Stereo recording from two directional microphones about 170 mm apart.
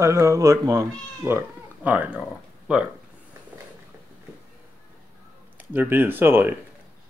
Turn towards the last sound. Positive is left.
turn(degrees=-10)  # may be behind; listen again after turning